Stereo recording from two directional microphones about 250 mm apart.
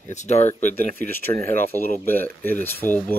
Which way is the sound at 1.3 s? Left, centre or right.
Centre.